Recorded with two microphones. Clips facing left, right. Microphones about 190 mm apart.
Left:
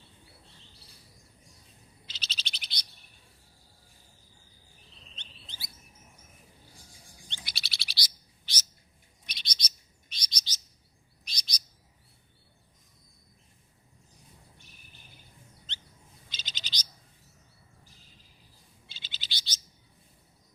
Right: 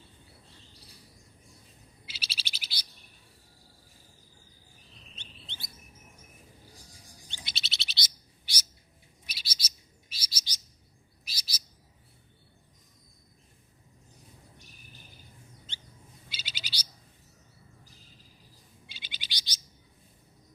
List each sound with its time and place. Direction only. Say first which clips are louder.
2.0 s bird: even; 10° right (ahead or behind)
5.1 s chirp: right 3 dB; 5° right (ahead or behind)
7.4 s bird: right 5 dB; 25° right (ahead or behind)
8.5 s bird: even; 10° right (ahead or behind)
9.2 s chirp: left 1 dB; 5° right (ahead or behind)
16.3 s bird: even; 10° right (ahead or behind)
18.9 s bird: even; 15° right (ahead or behind)